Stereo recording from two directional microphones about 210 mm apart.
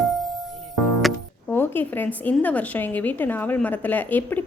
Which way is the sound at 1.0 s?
5° left (ahead or behind).